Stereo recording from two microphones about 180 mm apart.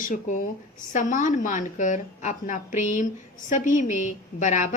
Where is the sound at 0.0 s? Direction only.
45° left (ahead or behind).